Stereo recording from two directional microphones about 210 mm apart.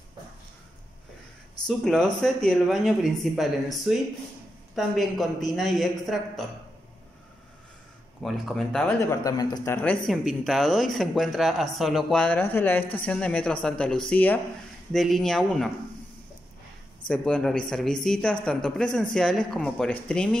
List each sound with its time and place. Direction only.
1.7 s speech: centre (ahead or behind)
8.2 s speech: centre (ahead or behind)
9.1 s speech: 15° left (ahead or behind); by 15.7 s centre (ahead or behind)
17.1 s speech: 5° left (ahead or behind)